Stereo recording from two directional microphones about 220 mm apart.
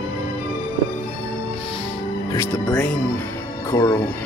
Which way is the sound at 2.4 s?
10° left (ahead or behind).